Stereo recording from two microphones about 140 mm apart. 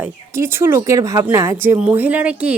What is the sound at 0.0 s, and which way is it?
Speech, 20° right (ahead or behind).